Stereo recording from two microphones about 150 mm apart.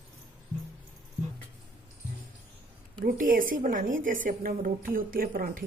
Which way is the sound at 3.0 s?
70° right (ahead or behind).